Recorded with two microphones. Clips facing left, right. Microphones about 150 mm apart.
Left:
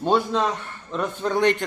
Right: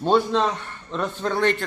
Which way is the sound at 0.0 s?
10° left (ahead or behind).